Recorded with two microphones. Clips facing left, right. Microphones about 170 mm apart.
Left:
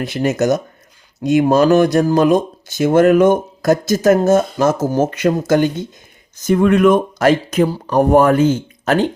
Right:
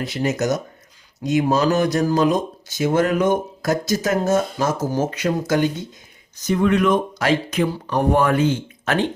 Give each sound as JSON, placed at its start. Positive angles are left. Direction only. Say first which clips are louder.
{"t": 0.0, "sound": "speech", "louder": "left 5 dB", "side_deg": 55}